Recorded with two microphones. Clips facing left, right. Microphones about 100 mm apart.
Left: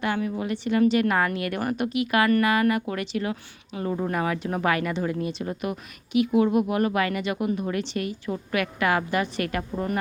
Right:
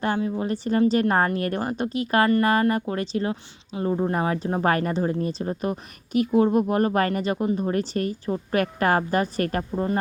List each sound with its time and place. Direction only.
0.0 s a woman's voice: 30° right (ahead or behind)
9.7 s speech: 25° right (ahead or behind)